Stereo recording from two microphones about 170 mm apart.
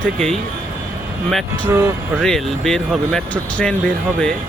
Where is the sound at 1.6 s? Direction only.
15° right (ahead or behind).